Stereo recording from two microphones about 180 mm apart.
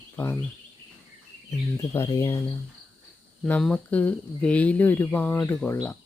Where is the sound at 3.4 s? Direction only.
5° left (ahead or behind).